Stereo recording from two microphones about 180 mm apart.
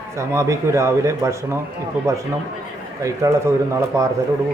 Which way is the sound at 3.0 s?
15° right (ahead or behind).